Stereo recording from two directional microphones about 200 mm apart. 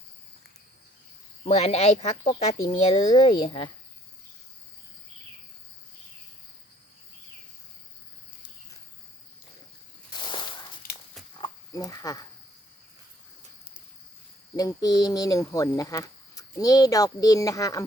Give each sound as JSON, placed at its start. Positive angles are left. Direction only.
{"t": 1.5, "sound": "speech", "side_deg": 30}
{"t": 10.1, "sound": "a sound", "side_deg": 25}
{"t": 14.5, "sound": "speech", "side_deg": 20}